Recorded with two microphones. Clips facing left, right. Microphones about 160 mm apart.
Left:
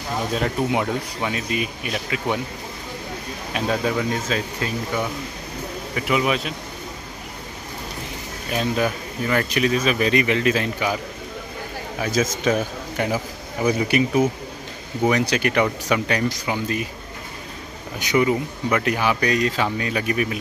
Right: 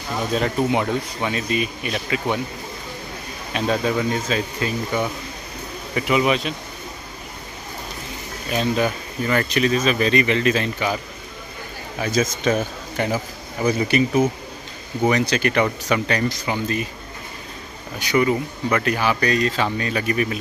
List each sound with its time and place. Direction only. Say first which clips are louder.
0.4 s speech: right 2 dB; 5° left (ahead or behind)
3.5 s speech: right 1 dB; centre (ahead or behind)
8.5 s speech: right 1 dB; 5° left (ahead or behind)
12.0 s speech: right 1 dB; 5° left (ahead or behind)
17.9 s speech: even; 15° left (ahead or behind)